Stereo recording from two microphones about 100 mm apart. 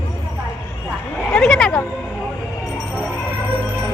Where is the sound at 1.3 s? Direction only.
5° left (ahead or behind).